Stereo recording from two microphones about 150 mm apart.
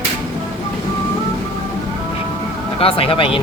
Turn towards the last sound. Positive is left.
turn(degrees=35)  # may be behind; listen again after turning